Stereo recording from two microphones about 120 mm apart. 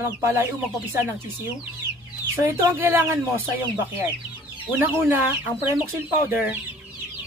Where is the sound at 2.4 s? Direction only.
20° right (ahead or behind).